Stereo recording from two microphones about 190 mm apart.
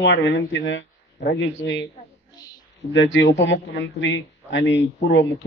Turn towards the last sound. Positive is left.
turn(degrees=70)  # may be behind; listen again after turning